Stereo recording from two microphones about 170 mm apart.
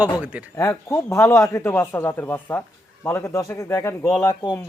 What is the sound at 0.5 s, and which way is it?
A man's voice, 15° left (ahead or behind).